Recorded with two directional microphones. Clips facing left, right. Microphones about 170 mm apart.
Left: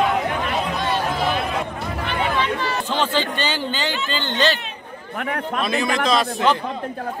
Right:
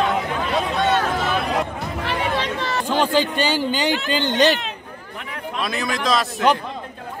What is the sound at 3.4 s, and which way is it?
Speech, 10° right (ahead or behind).